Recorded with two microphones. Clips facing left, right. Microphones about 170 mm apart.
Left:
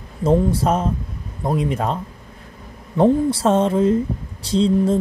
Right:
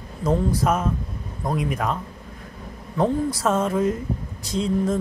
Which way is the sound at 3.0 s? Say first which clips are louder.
Left 6 dB; 30° left (ahead or behind).